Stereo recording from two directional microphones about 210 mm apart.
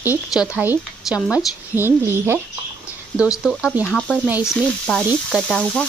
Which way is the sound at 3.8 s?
5° left (ahead or behind).